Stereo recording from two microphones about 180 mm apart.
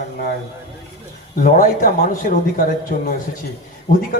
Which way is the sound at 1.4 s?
45° left (ahead or behind).